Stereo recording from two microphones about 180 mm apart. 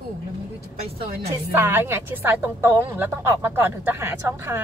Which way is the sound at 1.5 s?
15° right (ahead or behind).